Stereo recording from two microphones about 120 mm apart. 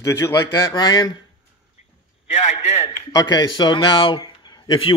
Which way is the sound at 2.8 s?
35° left (ahead or behind).